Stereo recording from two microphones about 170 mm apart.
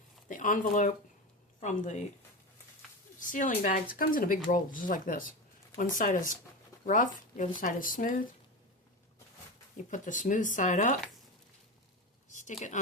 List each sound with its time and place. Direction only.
0.3 s speech: 50° left (ahead or behind)
3.2 s speech: 50° left (ahead or behind)
9.9 s speech: 50° left (ahead or behind)
12.3 s speech: 45° left (ahead or behind)